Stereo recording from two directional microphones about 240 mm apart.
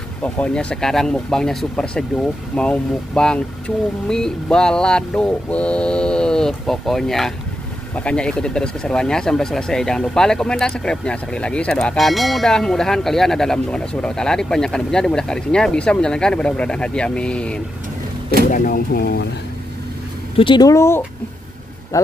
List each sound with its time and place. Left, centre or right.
0.2 s speech: centre
18.5 s speech: left
20.3 s speech: centre